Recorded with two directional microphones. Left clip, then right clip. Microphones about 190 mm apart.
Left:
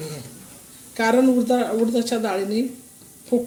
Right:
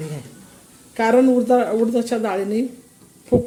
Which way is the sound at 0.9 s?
15° right (ahead or behind).